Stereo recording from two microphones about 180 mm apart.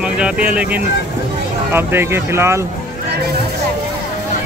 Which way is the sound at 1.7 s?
10° right (ahead or behind).